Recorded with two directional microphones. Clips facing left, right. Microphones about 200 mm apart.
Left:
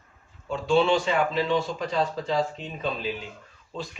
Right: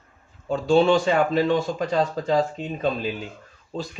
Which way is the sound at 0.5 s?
40° right (ahead or behind).